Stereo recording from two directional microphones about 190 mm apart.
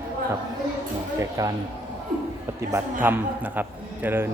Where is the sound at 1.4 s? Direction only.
15° right (ahead or behind).